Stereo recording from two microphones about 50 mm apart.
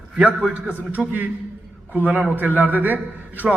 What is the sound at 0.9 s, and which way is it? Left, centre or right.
Speech, right.